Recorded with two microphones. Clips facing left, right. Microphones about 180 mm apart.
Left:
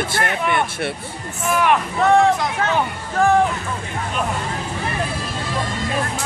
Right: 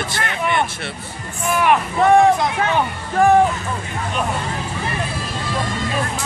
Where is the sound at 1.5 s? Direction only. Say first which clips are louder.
Right 1 dB; 5° right (ahead or behind).